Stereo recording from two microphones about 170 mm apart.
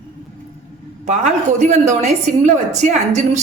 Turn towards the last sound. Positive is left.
turn(degrees=-45)  # may be behind; listen again after turning